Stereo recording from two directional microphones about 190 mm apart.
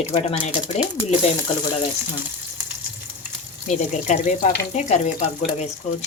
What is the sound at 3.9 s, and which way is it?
Speech, 40° left (ahead or behind).